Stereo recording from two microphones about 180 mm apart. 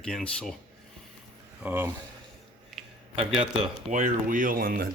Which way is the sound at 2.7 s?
Centre (ahead or behind).